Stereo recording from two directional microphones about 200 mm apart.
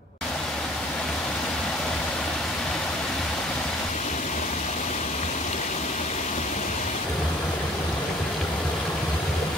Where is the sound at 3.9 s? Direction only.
35° left (ahead or behind).